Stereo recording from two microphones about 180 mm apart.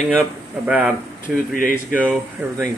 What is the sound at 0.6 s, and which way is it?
Speech, 5° right (ahead or behind).